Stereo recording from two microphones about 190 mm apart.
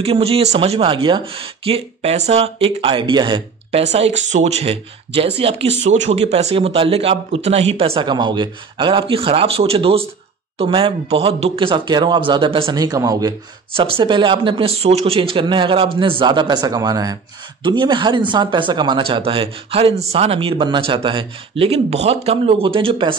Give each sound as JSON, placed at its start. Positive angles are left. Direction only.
{"t": 0.0, "sound": "speech", "side_deg": -30}
{"t": 4.3, "sound": "speech", "side_deg": -35}